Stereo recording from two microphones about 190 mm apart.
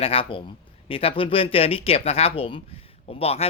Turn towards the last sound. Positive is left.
turn(degrees=30)  # may be behind; listen again after turning